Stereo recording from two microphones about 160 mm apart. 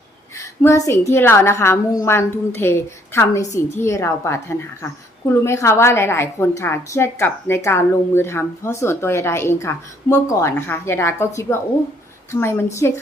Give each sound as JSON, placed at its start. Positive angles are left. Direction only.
{"t": 0.3, "sound": "a woman's voice", "side_deg": 20}